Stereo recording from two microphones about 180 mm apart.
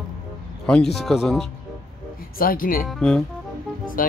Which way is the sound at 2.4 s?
50° left (ahead or behind).